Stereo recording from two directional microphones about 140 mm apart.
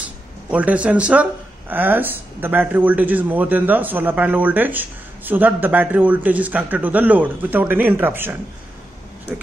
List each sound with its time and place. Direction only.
0.5 s speech: 10° right (ahead or behind)